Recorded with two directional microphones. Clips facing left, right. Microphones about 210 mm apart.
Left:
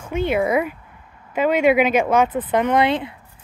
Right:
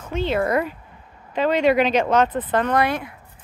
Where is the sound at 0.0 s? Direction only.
10° left (ahead or behind).